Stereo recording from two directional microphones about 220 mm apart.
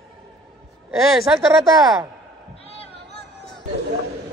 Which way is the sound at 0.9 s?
Centre (ahead or behind).